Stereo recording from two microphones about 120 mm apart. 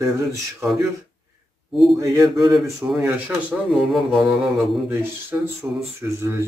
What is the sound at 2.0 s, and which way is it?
Speech, 25° right (ahead or behind).